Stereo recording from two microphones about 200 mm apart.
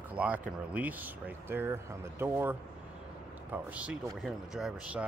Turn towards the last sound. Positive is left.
turn(degrees=-5)  # may be behind; listen again after turning